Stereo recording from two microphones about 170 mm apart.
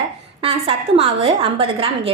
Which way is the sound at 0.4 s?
35° right (ahead or behind).